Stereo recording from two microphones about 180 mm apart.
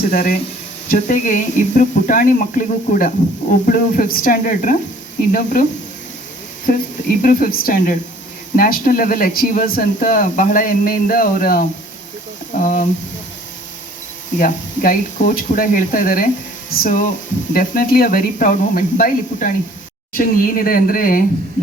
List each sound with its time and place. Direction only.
0.1 s speech: 50° left (ahead or behind)
6.7 s speech: 50° left (ahead or behind)
14.3 s speech: 50° left (ahead or behind)